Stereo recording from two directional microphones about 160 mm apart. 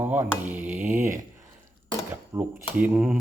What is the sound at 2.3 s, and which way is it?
Speech, 10° right (ahead or behind).